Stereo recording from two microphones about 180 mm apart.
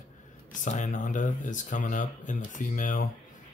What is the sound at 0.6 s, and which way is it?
Speech, 40° left (ahead or behind).